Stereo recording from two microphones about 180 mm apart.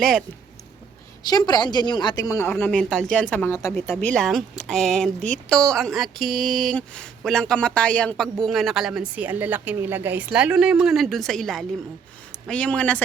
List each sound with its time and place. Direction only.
0.0 s speech: centre (ahead or behind)
1.2 s a woman's voice: 20° left (ahead or behind)
2.5 s speech: 5° left (ahead or behind)
3.9 s speech: 5° left (ahead or behind)